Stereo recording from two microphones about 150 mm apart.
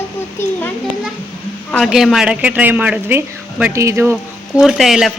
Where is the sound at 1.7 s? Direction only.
Centre (ahead or behind).